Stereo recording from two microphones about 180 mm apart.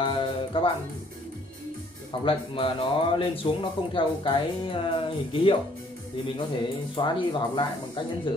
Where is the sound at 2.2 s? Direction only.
30° left (ahead or behind).